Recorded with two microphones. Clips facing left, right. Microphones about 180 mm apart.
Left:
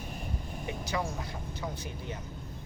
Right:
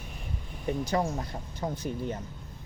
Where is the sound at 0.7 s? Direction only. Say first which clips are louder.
Right 7 dB; 45° right (ahead or behind).